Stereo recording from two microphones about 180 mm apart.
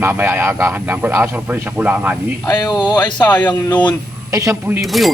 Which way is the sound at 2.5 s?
20° left (ahead or behind).